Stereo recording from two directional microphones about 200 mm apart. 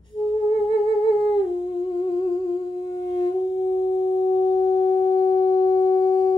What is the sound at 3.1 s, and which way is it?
Wind instrument, 20° left (ahead or behind).